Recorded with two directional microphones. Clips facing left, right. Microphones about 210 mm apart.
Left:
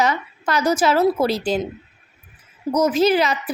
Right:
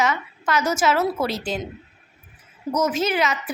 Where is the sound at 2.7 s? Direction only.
35° left (ahead or behind).